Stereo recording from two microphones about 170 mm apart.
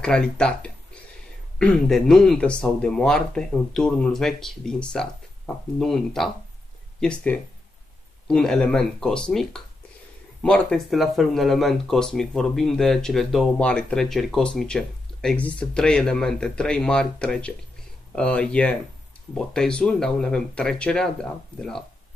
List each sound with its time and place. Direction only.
0.0 s speech: 5° left (ahead or behind)